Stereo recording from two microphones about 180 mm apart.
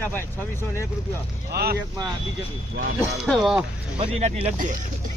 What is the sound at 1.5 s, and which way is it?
Speech, 60° right (ahead or behind).